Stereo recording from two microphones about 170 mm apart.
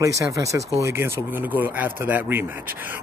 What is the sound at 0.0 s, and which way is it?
Speech, 20° right (ahead or behind).